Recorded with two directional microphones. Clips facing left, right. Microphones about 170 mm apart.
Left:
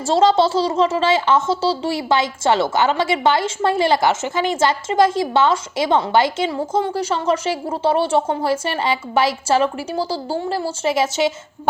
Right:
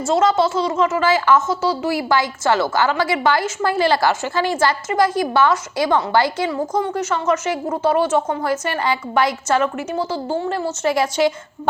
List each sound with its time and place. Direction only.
0.1 s speech: 30° left (ahead or behind)